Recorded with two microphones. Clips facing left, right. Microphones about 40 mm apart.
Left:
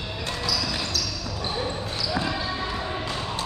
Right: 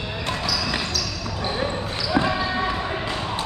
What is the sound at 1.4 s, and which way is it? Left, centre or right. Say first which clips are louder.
Basketball bounce: right 4 dB; right.